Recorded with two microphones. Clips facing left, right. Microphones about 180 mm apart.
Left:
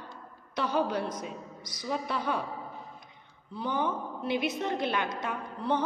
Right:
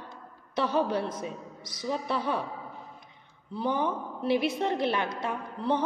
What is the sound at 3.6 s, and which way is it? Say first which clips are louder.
A woman's voice: right 2 dB; 30° right (ahead or behind).